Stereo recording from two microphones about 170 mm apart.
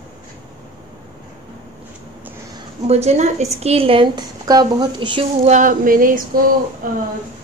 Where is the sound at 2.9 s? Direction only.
40° right (ahead or behind).